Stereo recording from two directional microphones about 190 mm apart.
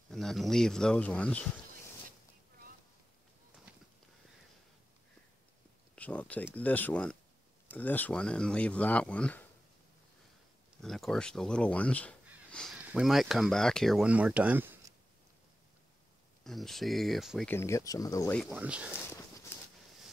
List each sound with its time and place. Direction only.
0.1 s speech: centre (ahead or behind)
5.9 s speech: 5° left (ahead or behind)
10.8 s speech: centre (ahead or behind)
16.4 s speech: centre (ahead or behind)
17.5 s speech: 15° left (ahead or behind)
18.5 s speech: 5° right (ahead or behind)